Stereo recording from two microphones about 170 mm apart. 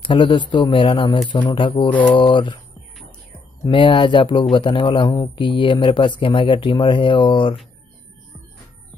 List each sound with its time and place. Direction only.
0.0 s speech: 30° left (ahead or behind)
1.9 s mantra: 10° left (ahead or behind)
2.1 s speech: 30° left (ahead or behind)
3.6 s speech: 30° left (ahead or behind)